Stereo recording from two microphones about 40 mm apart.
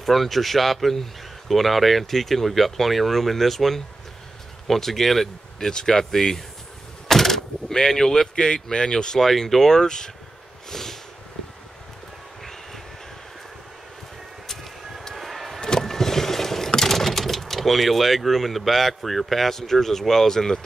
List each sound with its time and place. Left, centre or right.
0.0 s speech: centre
10.7 s a sound: centre
14.5 s vehicle: centre
19.0 s speech: centre